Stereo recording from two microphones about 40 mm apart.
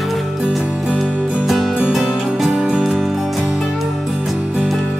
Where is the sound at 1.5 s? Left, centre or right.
Centre.